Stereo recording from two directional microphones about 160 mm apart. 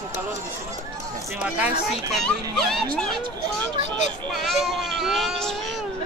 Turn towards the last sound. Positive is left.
turn(degrees=0)  # may be behind; listen again after turning